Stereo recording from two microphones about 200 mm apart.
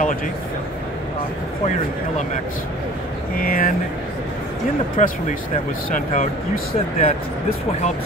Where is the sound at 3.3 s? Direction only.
45° left (ahead or behind).